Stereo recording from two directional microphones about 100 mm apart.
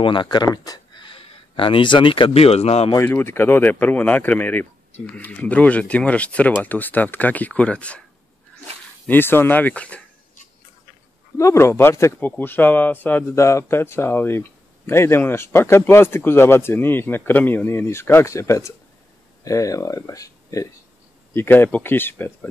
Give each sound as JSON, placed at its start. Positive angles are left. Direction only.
{"t": 0.0, "sound": "speech", "side_deg": 55}
{"t": 0.9, "sound": "speech", "side_deg": 60}
{"t": 3.0, "sound": "speech", "side_deg": 20}
{"t": 9.0, "sound": "speech", "side_deg": 20}
{"t": 11.3, "sound": "speech", "side_deg": 30}
{"t": 21.4, "sound": "speech", "side_deg": 20}